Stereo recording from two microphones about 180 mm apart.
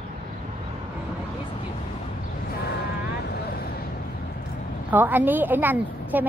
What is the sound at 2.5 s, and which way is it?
Vehicle, 60° left (ahead or behind).